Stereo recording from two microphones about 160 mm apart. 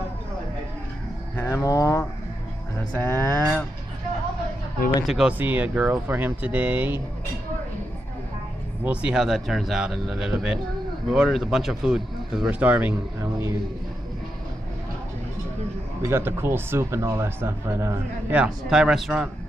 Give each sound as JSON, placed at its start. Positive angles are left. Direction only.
{"t": 1.3, "sound": "speech", "side_deg": 15}
{"t": 5.0, "sound": "speech", "side_deg": 0}
{"t": 8.8, "sound": "speech", "side_deg": -5}
{"t": 16.0, "sound": "speech", "side_deg": -15}